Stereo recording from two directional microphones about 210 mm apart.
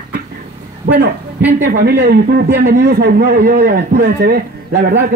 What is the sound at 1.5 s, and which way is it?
A man's voice, 45° right (ahead or behind).